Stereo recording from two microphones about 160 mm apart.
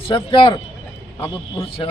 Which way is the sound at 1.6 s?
35° left (ahead or behind).